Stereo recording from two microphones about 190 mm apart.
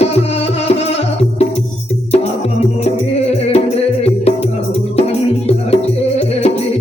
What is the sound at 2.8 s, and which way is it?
Music, 35° left (ahead or behind).